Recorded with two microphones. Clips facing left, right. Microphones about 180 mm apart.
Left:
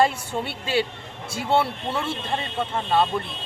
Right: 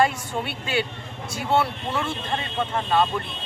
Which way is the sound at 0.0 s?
30° left (ahead or behind).